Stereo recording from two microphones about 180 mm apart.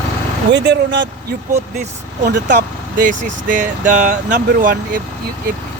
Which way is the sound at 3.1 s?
45° right (ahead or behind).